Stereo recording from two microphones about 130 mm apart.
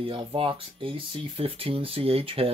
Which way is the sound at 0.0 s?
45° right (ahead or behind).